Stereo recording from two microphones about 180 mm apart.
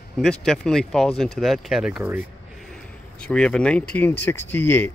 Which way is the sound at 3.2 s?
5° left (ahead or behind).